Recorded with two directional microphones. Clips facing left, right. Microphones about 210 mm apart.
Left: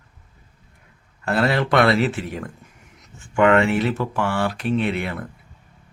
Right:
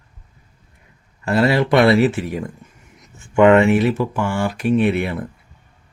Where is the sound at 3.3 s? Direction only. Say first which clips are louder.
Right 5 dB; 20° right (ahead or behind).